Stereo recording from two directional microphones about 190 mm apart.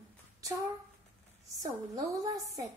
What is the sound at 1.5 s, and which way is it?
A woman's voice, 20° right (ahead or behind).